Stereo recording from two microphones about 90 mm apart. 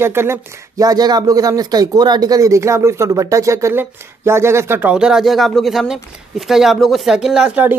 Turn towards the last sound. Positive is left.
turn(degrees=-10)  # may be behind; listen again after turning